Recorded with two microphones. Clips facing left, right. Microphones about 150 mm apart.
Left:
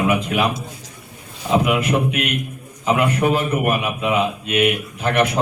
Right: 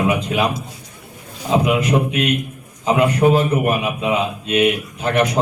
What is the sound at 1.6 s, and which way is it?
A man's voice, 30° right (ahead or behind).